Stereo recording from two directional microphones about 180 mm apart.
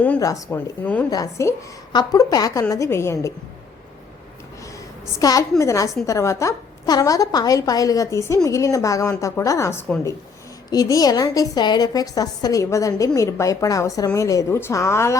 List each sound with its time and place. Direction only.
0.2 s a woman's voice: 20° left (ahead or behind)
5.2 s a woman's voice: 20° left (ahead or behind)